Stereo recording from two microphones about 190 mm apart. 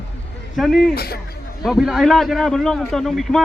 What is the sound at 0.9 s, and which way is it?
Speech, 55° left (ahead or behind).